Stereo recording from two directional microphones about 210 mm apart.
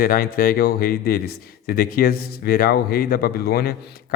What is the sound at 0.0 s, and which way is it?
Speech, 45° left (ahead or behind).